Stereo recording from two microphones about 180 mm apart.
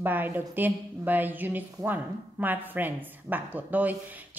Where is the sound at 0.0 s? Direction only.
10° right (ahead or behind).